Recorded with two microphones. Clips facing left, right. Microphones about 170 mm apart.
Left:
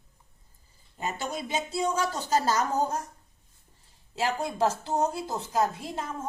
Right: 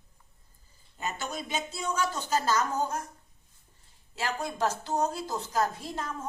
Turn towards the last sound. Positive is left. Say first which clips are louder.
# left 2 dB
turn(degrees=20)  # may be behind; listen again after turning